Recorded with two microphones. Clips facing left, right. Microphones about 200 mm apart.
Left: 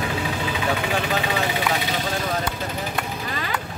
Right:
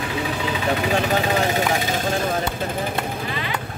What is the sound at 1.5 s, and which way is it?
Speech, 45° right (ahead or behind).